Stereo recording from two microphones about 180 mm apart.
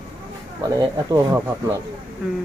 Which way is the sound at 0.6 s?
20° right (ahead or behind).